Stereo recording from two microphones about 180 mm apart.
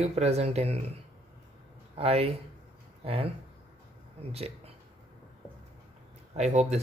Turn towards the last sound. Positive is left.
turn(degrees=-40)  # may be behind; listen again after turning